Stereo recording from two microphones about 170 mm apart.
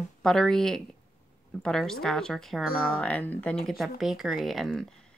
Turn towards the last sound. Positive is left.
turn(degrees=0)  # may be behind; listen again after turning